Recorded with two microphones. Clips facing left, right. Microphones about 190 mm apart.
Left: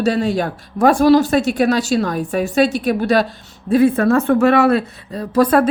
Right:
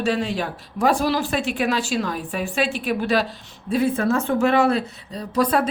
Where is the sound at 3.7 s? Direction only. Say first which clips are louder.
Left 7 dB; 60° left (ahead or behind).